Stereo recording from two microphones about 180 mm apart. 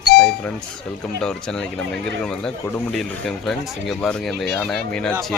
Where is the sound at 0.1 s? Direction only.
60° left (ahead or behind).